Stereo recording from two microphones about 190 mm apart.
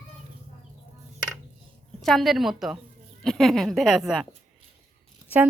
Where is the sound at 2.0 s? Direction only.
Centre (ahead or behind).